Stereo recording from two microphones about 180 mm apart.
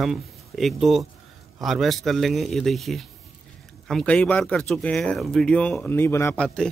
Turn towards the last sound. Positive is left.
turn(degrees=5)  # may be behind; listen again after turning